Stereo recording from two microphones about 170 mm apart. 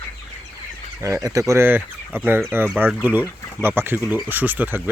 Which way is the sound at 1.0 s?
20° right (ahead or behind).